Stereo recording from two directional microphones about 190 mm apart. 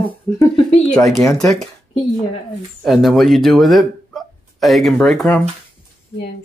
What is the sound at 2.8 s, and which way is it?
Speech, centre (ahead or behind).